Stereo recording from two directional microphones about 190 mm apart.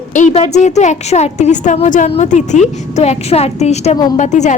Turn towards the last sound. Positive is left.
turn(degrees=40)  # may be behind; listen again after turning